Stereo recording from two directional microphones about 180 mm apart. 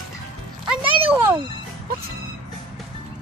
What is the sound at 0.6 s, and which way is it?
Music, 30° right (ahead or behind).